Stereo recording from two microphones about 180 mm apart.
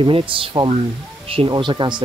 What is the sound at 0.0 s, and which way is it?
Speech, 30° right (ahead or behind).